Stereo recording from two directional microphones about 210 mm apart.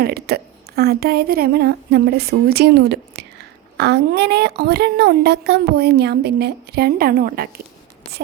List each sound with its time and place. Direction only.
0.0 s a woman's voice: 50° right (ahead or behind)